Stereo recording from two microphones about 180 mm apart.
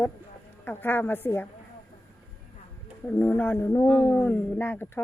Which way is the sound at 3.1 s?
10° left (ahead or behind).